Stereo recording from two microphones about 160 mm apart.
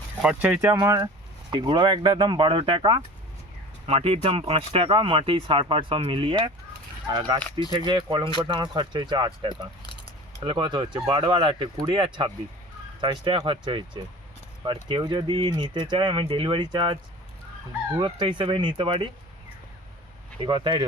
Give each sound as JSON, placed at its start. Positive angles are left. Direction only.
{"t": 0.2, "sound": "speech", "side_deg": -5}
{"t": 0.6, "sound": "speech", "side_deg": -20}
{"t": 9.8, "sound": "keys jangling", "side_deg": 30}
{"t": 10.4, "sound": "speech", "side_deg": -30}
{"t": 20.4, "sound": "speech", "side_deg": -30}